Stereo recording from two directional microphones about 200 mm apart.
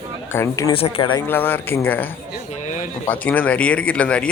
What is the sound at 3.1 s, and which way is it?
Speech, 10° left (ahead or behind).